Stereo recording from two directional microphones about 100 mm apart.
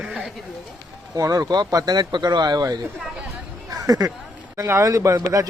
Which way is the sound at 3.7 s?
35° right (ahead or behind).